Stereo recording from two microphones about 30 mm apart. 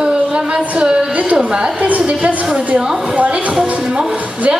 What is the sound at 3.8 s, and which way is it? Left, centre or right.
Speech, right.